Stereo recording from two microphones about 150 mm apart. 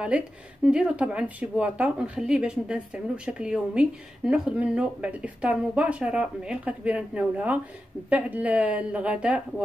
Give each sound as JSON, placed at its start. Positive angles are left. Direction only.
{"t": 0.1, "sound": "speech", "side_deg": -10}